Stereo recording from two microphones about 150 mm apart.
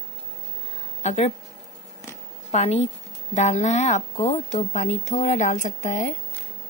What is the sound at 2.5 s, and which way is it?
A woman's voice, 45° left (ahead or behind).